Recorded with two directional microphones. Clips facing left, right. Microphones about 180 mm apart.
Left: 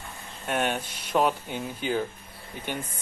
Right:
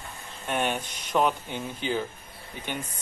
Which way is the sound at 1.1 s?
5° left (ahead or behind).